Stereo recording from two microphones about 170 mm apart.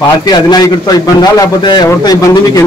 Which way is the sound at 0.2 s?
25° left (ahead or behind).